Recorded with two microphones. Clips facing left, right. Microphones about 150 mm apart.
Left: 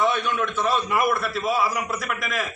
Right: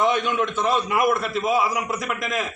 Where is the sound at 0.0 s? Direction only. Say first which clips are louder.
Right 2 dB; 20° right (ahead or behind).